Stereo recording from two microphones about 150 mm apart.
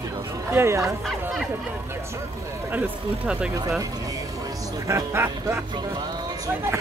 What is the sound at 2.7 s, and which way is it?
Speech, 10° right (ahead or behind).